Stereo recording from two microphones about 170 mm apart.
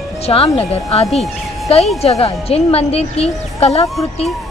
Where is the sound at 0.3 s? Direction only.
35° left (ahead or behind).